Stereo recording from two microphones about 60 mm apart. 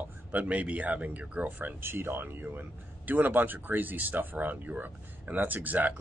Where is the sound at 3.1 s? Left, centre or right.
Right.